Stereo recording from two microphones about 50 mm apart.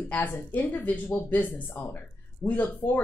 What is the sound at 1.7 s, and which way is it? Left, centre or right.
Speech, left.